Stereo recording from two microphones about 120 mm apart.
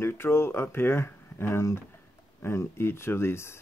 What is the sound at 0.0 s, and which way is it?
Speech, 20° left (ahead or behind).